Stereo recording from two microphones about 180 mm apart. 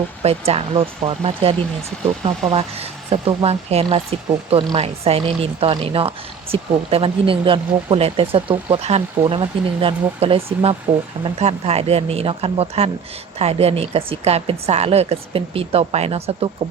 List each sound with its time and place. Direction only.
0.2 s speech: 35° right (ahead or behind)